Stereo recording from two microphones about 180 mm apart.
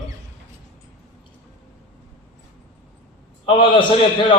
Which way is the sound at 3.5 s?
25° left (ahead or behind).